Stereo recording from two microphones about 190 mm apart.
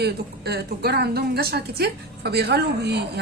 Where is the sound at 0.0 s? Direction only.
60° right (ahead or behind).